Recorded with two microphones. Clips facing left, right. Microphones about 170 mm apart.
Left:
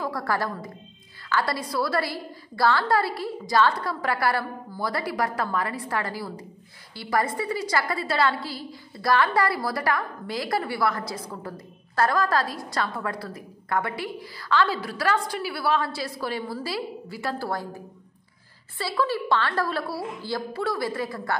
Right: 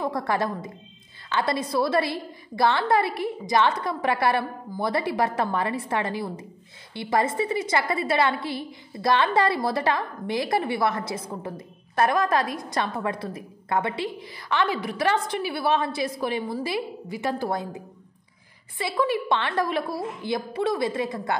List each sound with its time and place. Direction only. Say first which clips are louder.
0.0 s a woman's voice: right 2 dB; 20° right (ahead or behind)